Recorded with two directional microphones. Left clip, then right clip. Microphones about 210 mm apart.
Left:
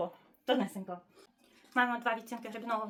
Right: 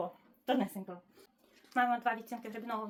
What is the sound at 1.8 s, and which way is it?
A woman's voice, 15° left (ahead or behind).